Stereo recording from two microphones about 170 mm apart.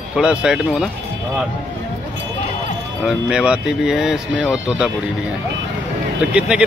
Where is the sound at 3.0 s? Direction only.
5° right (ahead or behind).